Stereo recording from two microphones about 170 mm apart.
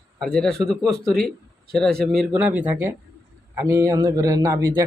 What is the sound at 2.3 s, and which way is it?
A man's voice, 10° right (ahead or behind).